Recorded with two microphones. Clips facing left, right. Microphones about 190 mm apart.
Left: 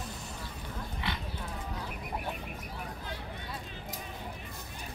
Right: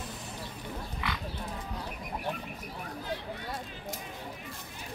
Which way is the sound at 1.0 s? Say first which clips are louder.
Even; 25° left (ahead or behind).